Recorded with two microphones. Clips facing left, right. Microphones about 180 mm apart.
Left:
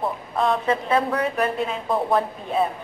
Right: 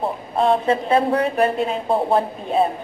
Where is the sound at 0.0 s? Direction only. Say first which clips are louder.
Right 3 dB; 30° right (ahead or behind).